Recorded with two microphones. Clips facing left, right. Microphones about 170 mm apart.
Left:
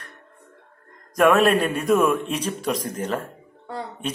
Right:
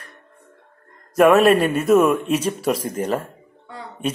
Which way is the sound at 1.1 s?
5° right (ahead or behind).